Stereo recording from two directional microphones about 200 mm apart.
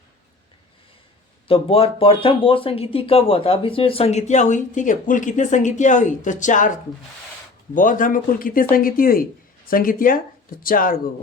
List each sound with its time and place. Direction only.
1.5 s speech: 25° left (ahead or behind); by 11.0 s 45° left (ahead or behind)